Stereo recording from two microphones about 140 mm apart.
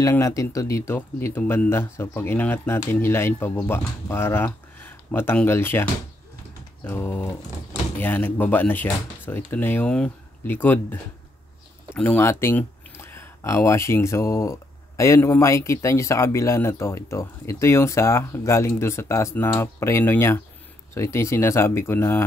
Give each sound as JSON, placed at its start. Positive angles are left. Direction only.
{"t": 0.0, "sound": "speech", "side_deg": 20}